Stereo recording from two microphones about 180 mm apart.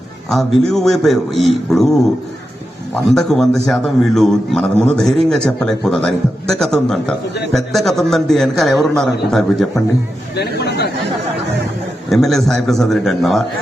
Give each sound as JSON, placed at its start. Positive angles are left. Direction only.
{"t": 0.3, "sound": "a man's voice", "side_deg": 0}
{"t": 3.2, "sound": "a man's voice", "side_deg": 0}
{"t": 10.6, "sound": "chatter", "side_deg": 65}
{"t": 12.0, "sound": "a man's voice", "side_deg": 0}